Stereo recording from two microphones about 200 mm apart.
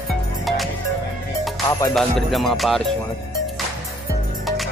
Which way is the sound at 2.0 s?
Centre (ahead or behind).